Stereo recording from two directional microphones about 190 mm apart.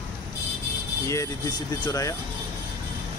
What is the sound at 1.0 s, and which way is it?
Speech, 15° left (ahead or behind).